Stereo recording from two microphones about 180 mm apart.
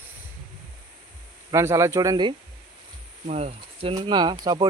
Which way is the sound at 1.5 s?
15° right (ahead or behind).